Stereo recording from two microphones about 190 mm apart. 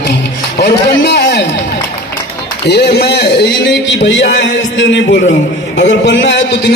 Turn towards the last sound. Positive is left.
turn(degrees=65)  # may be behind; listen again after turning